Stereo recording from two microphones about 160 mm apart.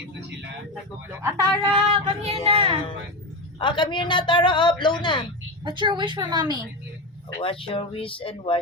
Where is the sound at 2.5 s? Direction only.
35° right (ahead or behind).